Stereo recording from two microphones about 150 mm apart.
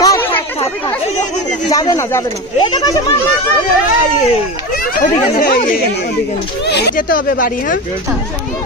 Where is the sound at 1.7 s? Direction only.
25° left (ahead or behind).